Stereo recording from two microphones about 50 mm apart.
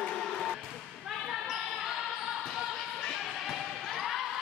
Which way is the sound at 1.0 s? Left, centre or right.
Centre.